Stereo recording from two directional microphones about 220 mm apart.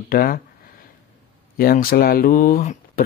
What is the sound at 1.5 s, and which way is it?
Speech, 40° left (ahead or behind).